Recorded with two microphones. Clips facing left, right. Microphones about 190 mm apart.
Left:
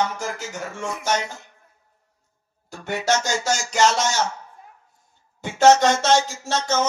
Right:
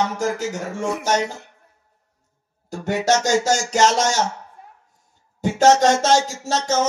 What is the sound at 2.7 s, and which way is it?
Speech, 45° right (ahead or behind).